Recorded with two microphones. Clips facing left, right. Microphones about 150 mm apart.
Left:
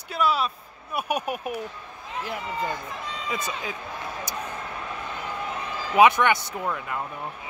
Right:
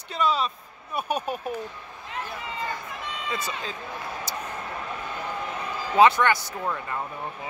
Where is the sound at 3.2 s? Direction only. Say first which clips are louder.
Left 1 dB; 15° left (ahead or behind).